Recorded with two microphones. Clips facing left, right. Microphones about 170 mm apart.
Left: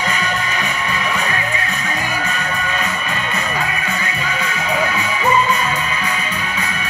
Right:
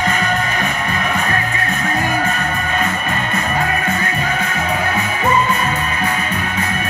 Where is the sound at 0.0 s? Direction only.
50° right (ahead or behind).